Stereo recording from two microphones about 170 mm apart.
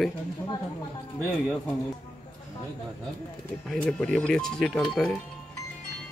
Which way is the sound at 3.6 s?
5° left (ahead or behind).